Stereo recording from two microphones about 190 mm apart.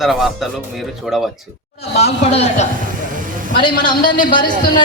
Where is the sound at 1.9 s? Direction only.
35° left (ahead or behind).